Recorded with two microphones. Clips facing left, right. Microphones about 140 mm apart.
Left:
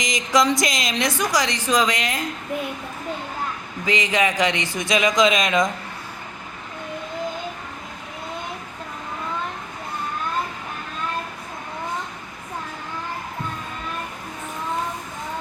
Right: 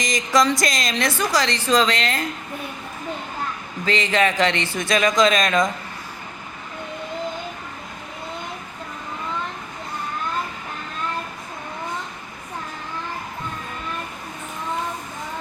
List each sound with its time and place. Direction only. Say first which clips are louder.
0.0 s speech: right 1 dB; 20° left (ahead or behind)
3.8 s speech: right 1 dB; 15° left (ahead or behind)